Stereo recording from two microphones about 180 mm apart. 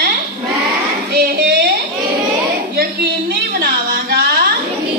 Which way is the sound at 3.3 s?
65° right (ahead or behind).